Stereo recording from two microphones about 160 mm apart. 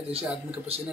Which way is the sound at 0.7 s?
40° right (ahead or behind).